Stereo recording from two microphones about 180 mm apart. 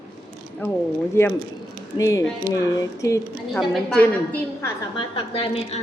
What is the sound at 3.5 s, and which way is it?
Speech, 5° left (ahead or behind).